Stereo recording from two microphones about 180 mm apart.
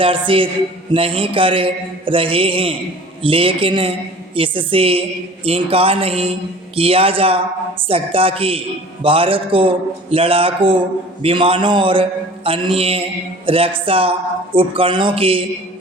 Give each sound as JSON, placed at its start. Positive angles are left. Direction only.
{"t": 0.0, "sound": "mantra", "side_deg": -30}
{"t": 5.5, "sound": "a woman's voice", "side_deg": -30}
{"t": 11.2, "sound": "mantra", "side_deg": -30}
{"t": 12.5, "sound": "a woman's voice", "side_deg": -30}
{"t": 14.5, "sound": "mantra", "side_deg": -30}